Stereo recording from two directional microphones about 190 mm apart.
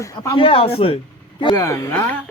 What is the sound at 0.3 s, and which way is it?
A man's voice, 30° left (ahead or behind).